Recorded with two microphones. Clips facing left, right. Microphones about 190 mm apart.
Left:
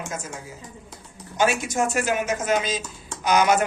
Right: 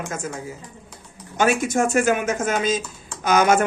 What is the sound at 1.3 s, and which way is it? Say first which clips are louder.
A man's voice: right 3 dB; 55° right (ahead or behind).